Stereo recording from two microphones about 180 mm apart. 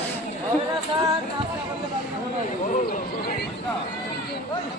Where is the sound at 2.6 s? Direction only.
45° left (ahead or behind).